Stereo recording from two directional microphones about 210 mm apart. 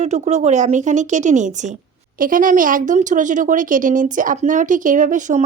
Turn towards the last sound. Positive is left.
turn(degrees=-35)  # may be behind; listen again after turning